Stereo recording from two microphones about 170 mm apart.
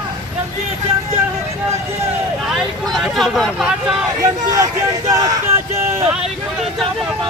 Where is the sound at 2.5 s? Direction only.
Centre (ahead or behind).